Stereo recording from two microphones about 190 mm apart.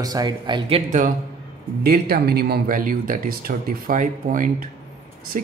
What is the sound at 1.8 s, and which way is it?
Speech, 55° right (ahead or behind).